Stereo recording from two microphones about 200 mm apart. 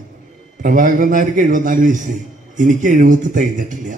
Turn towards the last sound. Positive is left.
turn(degrees=-40)  # may be behind; listen again after turning